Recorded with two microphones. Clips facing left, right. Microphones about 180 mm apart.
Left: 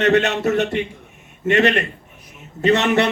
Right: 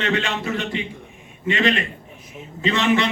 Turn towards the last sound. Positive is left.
turn(degrees=65)  # may be behind; listen again after turning